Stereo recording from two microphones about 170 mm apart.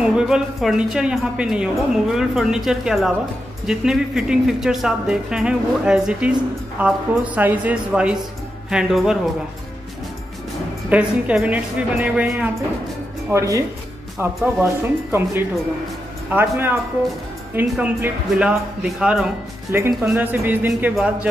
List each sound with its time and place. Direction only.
0.0 s a woman's voice: 5° right (ahead or behind)
10.9 s a woman's voice: 5° right (ahead or behind)
13.3 s a woman's voice: 20° right (ahead or behind)